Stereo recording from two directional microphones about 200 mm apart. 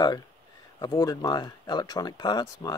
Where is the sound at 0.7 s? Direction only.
20° left (ahead or behind).